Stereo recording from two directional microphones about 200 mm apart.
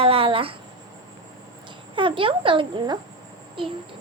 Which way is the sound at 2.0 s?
25° right (ahead or behind).